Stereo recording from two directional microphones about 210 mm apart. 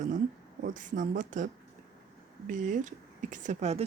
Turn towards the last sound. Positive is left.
turn(degrees=-30)  # may be behind; listen again after turning